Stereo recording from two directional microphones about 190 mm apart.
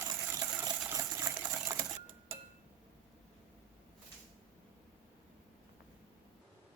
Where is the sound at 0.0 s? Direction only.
20° right (ahead or behind).